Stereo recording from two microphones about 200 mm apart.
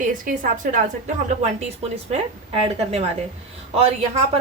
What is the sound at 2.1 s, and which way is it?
Speech, 30° right (ahead or behind).